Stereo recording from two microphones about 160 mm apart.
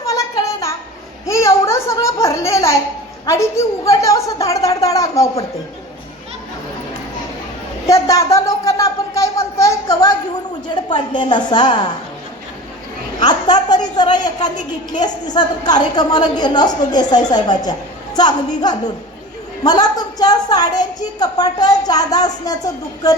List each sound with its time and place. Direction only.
0.0 s a sound: 20° left (ahead or behind)
3.2 s a woman's voice: 15° left (ahead or behind)
7.9 s a woman's voice: 20° left (ahead or behind)
13.1 s a woman's voice: 25° left (ahead or behind)